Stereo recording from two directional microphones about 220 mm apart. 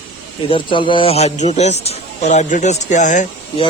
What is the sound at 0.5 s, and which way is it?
A man's voice, 20° left (ahead or behind).